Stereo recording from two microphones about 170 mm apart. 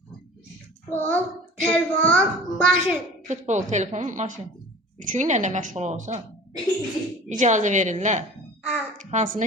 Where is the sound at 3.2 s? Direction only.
45° right (ahead or behind).